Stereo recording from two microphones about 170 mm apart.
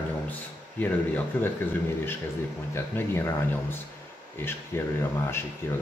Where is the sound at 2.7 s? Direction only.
15° left (ahead or behind).